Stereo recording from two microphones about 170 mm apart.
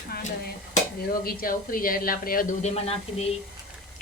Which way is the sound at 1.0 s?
60° left (ahead or behind).